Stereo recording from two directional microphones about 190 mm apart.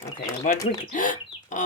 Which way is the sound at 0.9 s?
45° left (ahead or behind).